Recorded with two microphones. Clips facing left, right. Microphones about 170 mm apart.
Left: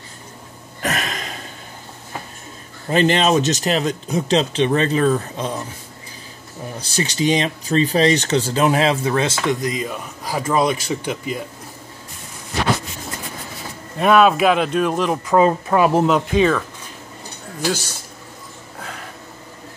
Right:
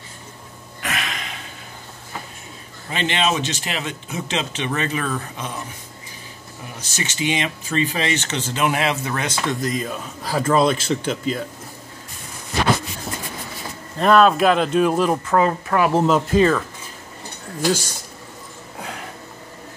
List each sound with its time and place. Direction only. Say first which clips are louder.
0.8 s a sound: left 4 dB; 40° left (ahead or behind)
2.9 s speech: left 6 dB; 40° left (ahead or behind)
6.8 s speech: left 5 dB; 35° left (ahead or behind); by 11.4 s 10° left (ahead or behind)
13.9 s speech: left 1 dB; 5° left (ahead or behind)
15.2 s speech: left 3 dB; 20° left (ahead or behind)
15.9 s speech: left 1 dB; centre (ahead or behind)